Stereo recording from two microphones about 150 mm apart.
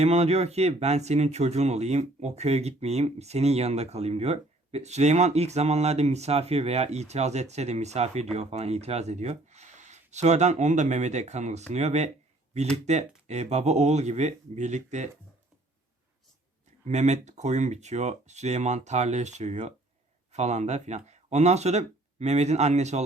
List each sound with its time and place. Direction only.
0.0 s speech: 45° right (ahead or behind)
16.8 s speech: 50° right (ahead or behind)